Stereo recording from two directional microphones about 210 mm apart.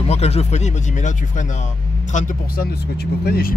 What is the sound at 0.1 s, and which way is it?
Speech, 30° left (ahead or behind).